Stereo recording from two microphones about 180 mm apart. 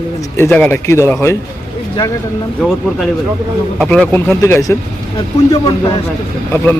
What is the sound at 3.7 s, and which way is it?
Speech, centre (ahead or behind).